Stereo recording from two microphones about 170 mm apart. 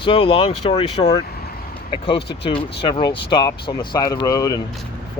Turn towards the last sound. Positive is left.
turn(degrees=20)  # may be behind; listen again after turning